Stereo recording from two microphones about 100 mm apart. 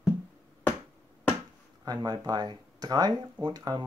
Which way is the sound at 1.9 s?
40° right (ahead or behind).